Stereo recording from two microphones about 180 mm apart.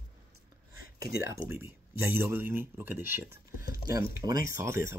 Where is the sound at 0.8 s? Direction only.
55° left (ahead or behind).